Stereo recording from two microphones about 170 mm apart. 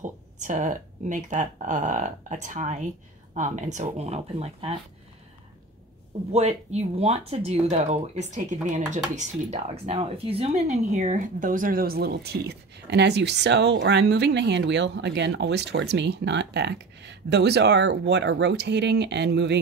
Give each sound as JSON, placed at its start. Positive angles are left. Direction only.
{"t": 0.0, "sound": "speech", "side_deg": -50}
{"t": 6.3, "sound": "speech", "side_deg": -40}